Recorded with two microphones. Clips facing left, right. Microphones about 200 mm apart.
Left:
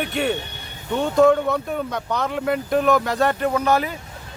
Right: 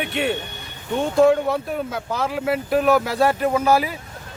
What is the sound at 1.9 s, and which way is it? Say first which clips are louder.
Speech: even; 5° right (ahead or behind).